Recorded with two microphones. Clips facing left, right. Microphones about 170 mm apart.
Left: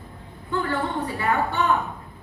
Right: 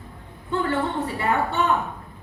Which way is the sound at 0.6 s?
25° right (ahead or behind).